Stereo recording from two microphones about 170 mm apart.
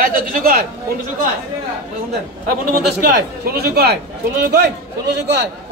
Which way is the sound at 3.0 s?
60° right (ahead or behind).